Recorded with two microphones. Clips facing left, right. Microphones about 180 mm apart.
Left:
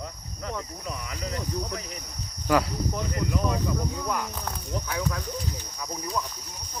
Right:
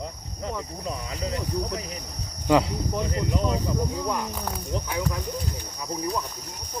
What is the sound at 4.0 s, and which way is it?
Speech, 20° right (ahead or behind).